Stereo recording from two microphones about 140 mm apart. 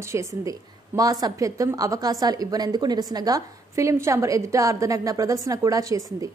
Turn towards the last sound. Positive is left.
turn(degrees=-25)  # may be behind; listen again after turning